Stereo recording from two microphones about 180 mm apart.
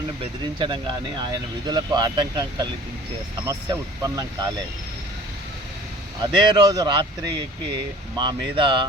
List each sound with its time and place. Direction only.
0.2 s speech: 25° right (ahead or behind)
6.2 s speech: 25° right (ahead or behind)